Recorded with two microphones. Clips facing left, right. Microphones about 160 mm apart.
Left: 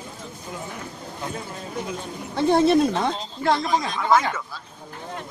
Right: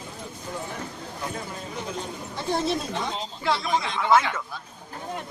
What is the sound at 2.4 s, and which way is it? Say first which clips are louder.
Speech: left 10 dB; 60° left (ahead or behind).